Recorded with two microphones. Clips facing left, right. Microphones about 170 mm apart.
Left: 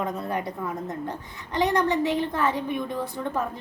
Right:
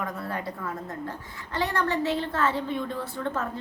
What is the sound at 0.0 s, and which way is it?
A woman's voice, 20° left (ahead or behind).